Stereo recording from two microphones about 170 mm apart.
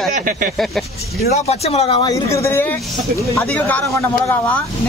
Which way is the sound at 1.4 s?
40° left (ahead or behind).